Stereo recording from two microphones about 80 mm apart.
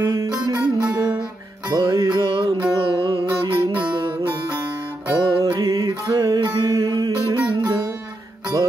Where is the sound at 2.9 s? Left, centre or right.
Right.